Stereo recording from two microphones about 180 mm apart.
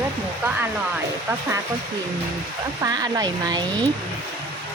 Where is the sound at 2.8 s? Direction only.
20° right (ahead or behind).